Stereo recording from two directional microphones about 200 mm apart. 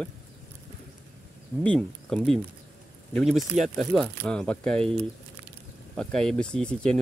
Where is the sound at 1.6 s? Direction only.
5° left (ahead or behind).